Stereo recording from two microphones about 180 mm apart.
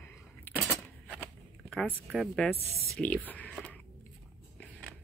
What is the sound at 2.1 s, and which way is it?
Speech, centre (ahead or behind).